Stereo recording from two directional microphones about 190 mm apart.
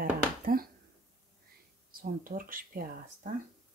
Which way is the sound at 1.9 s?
50° right (ahead or behind).